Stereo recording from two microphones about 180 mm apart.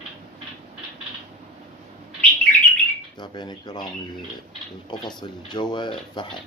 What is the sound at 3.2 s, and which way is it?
Speech, 25° left (ahead or behind).